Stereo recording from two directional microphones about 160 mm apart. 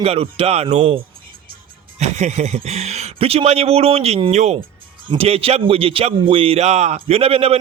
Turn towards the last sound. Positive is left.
turn(degrees=-40)  # may be behind; listen again after turning